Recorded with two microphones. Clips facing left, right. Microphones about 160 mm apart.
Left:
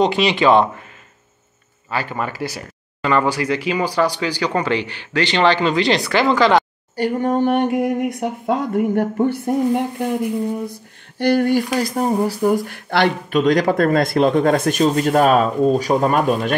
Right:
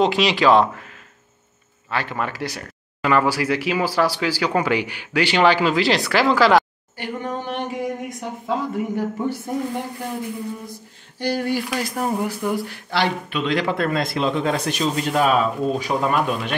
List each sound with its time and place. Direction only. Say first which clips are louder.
0.0 s speech: left 2 dB; centre (ahead or behind)
1.9 s speech: left 2 dB; centre (ahead or behind)
7.0 s speech: left 10 dB; 45° left (ahead or behind)
11.1 s speech: left 7 dB; 55° left (ahead or behind)